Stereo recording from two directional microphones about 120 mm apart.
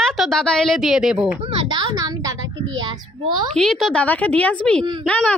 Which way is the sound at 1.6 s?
35° right (ahead or behind).